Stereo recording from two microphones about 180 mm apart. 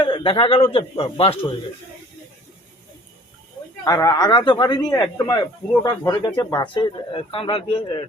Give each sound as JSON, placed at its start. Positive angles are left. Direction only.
{"t": 0.0, "sound": "speech", "side_deg": 30}
{"t": 3.8, "sound": "speech", "side_deg": 15}